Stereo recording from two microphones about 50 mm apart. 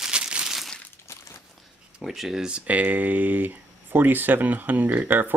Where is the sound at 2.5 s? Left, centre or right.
Right.